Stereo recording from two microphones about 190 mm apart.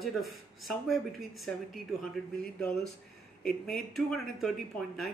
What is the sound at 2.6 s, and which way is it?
Speech, centre (ahead or behind).